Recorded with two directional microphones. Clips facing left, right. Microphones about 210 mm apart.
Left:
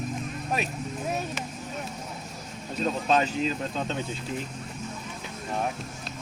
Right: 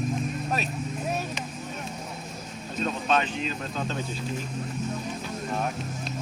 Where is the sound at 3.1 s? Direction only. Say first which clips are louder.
Left 2 dB; 35° left (ahead or behind).